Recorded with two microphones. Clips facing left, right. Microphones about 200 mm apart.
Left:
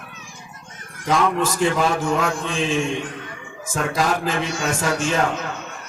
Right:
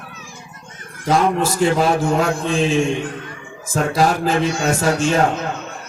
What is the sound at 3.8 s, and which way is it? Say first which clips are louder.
A man's voice: right 4 dB; 35° right (ahead or behind).